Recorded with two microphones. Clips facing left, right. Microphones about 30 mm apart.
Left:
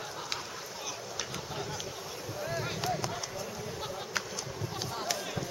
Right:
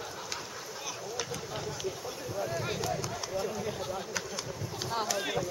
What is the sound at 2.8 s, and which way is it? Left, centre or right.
Run, left.